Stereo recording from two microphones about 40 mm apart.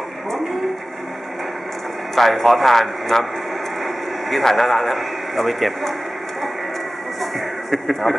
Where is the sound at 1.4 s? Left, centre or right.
Centre.